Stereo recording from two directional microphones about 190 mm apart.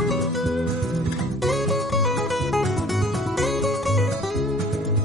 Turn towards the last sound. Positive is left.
turn(degrees=0)  # may be behind; listen again after turning